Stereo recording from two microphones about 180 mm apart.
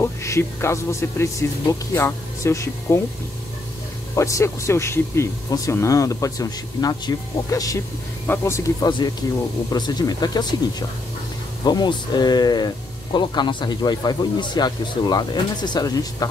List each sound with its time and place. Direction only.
0.0 s speech: 15° left (ahead or behind)
4.1 s speech: 15° left (ahead or behind)